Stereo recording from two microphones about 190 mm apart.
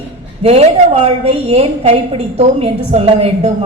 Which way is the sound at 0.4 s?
35° right (ahead or behind).